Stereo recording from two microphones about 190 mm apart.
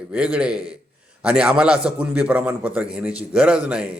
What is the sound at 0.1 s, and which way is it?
A man's voice, 5° right (ahead or behind).